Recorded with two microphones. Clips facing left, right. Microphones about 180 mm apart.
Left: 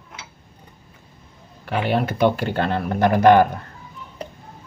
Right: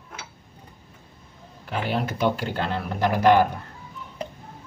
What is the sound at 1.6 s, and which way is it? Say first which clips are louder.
Speech: left 5 dB; 65° left (ahead or behind).